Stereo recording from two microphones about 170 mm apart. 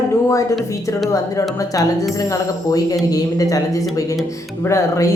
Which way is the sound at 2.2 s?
20° left (ahead or behind).